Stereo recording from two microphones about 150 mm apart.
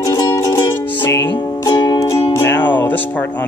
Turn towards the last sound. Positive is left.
turn(degrees=10)  # may be behind; listen again after turning